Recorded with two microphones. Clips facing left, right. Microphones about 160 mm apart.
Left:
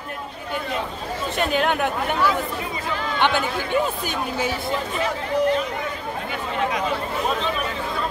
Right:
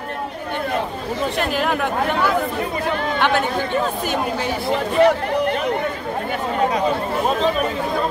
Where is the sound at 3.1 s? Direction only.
Centre (ahead or behind).